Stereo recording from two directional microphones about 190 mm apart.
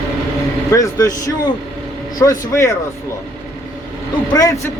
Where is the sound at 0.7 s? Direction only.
15° left (ahead or behind).